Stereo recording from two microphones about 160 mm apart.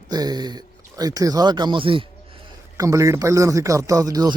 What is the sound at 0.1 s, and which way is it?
Speech, 25° right (ahead or behind).